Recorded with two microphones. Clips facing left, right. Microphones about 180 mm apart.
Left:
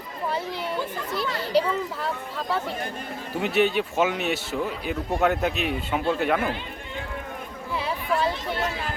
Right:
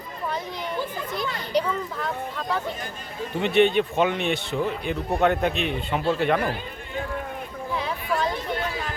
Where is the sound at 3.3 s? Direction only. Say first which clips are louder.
Right 3 dB; 5° left (ahead or behind).